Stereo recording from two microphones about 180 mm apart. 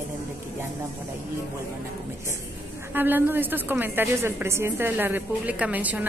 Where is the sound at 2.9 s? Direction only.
10° right (ahead or behind).